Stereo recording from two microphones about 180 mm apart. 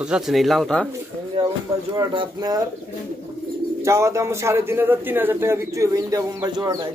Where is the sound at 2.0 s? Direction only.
25° right (ahead or behind).